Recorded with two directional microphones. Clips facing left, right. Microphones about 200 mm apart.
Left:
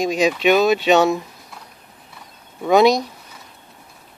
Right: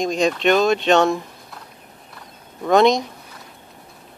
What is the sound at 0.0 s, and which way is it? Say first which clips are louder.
Speech: left 1 dB; 5° left (ahead or behind).